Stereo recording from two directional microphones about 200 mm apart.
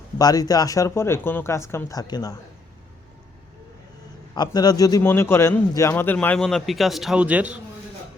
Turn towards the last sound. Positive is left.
turn(degrees=-5)  # may be behind; listen again after turning